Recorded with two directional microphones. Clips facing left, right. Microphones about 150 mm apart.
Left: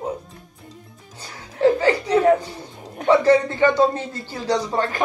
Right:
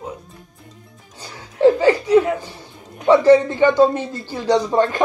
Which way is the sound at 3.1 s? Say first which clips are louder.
Right 4 dB; 15° right (ahead or behind).